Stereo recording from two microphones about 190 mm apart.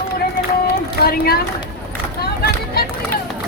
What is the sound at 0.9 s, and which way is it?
Speech, 55° left (ahead or behind).